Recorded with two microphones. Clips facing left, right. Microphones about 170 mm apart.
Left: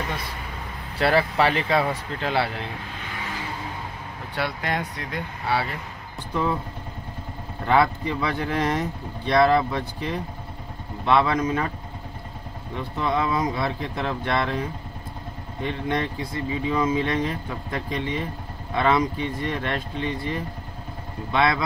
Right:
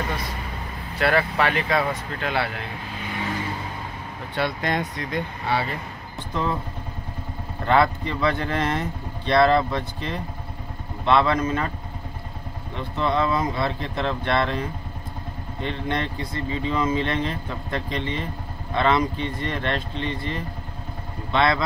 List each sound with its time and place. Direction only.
0.9 s speech: 30° left (ahead or behind)
4.4 s speech: 10° left (ahead or behind)
7.6 s speech: 10° left (ahead or behind)
12.7 s speech: 10° left (ahead or behind)
15.6 s speech: 10° left (ahead or behind)